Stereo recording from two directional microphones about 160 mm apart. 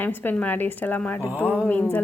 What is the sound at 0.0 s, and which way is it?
A woman's voice, 10° left (ahead or behind).